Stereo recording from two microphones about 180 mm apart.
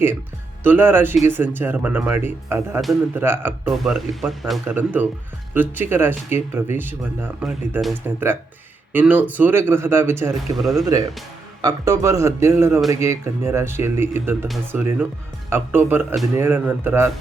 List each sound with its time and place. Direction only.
0.6 s speech: 10° right (ahead or behind)
4.6 s speech: 10° right (ahead or behind)
7.4 s speech: centre (ahead or behind)
10.6 s speech: centre (ahead or behind)
10.8 s speech: 20° right (ahead or behind)